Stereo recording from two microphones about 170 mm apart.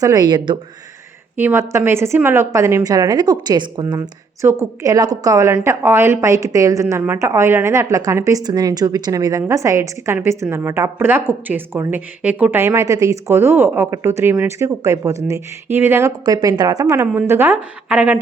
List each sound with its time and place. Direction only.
0.0 s speech: 20° right (ahead or behind)
1.4 s a woman's voice: 15° right (ahead or behind)